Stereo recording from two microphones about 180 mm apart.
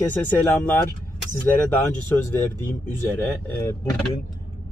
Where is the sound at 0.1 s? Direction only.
10° left (ahead or behind).